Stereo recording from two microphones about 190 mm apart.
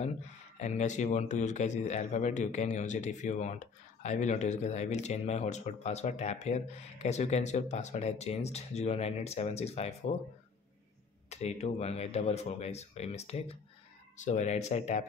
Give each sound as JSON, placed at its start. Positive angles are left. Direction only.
{"t": 0.6, "sound": "speech", "side_deg": 40}
{"t": 11.2, "sound": "speech", "side_deg": 35}